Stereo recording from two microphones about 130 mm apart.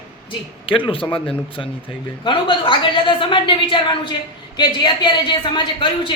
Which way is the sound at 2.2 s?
40° left (ahead or behind).